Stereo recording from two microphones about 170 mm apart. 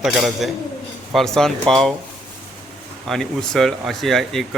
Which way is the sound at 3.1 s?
Centre (ahead or behind).